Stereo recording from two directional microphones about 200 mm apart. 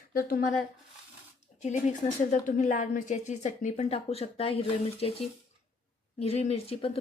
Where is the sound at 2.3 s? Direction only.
40° left (ahead or behind).